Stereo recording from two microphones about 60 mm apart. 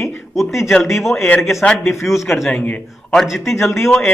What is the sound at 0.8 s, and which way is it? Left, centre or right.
Speech, centre.